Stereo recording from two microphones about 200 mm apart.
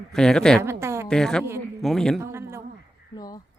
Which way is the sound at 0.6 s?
15° right (ahead or behind).